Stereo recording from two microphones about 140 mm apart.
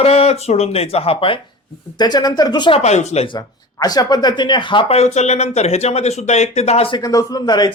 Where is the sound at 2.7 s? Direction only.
50° left (ahead or behind).